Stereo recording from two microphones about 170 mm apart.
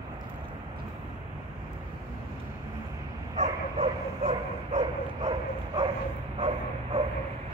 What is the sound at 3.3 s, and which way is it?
Bow-wow, 40° right (ahead or behind).